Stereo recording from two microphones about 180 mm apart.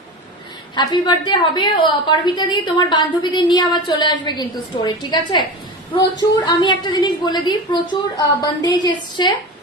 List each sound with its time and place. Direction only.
0.7 s a woman's voice: 25° left (ahead or behind)